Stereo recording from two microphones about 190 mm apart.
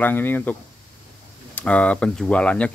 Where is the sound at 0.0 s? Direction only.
10° left (ahead or behind).